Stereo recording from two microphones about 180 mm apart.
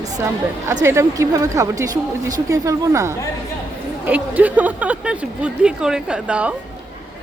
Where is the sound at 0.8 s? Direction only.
15° right (ahead or behind).